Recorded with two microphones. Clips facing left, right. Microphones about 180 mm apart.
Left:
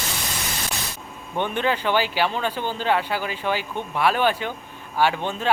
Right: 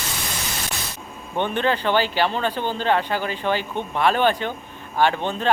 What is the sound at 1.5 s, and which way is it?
Speech, 10° left (ahead or behind).